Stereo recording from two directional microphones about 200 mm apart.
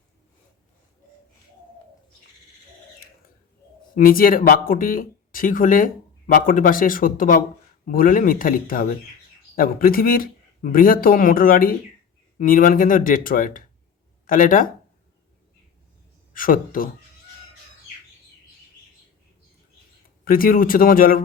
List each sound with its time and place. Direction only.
3.9 s speech: 45° left (ahead or behind)
16.3 s speech: 45° left (ahead or behind)
20.2 s speech: 45° left (ahead or behind)